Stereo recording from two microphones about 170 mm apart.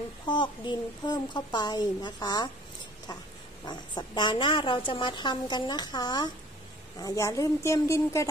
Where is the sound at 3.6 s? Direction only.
25° left (ahead or behind).